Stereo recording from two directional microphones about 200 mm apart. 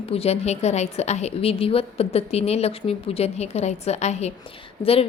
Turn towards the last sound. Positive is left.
turn(degrees=30)  # may be behind; listen again after turning